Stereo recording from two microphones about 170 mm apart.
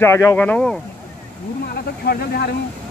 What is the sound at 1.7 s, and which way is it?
Speech, 65° left (ahead or behind).